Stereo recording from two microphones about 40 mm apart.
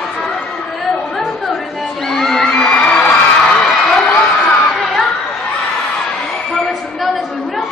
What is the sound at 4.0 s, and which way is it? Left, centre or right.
Crowd, left.